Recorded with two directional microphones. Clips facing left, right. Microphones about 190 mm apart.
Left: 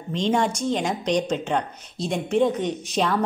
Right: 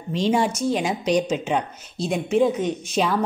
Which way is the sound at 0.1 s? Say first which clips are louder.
Right 1 dB; 10° right (ahead or behind).